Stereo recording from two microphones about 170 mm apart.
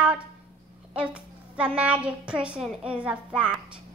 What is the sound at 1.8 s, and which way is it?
A woman's voice, 5° right (ahead or behind).